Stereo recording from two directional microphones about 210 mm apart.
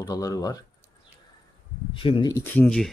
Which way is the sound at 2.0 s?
25° left (ahead or behind).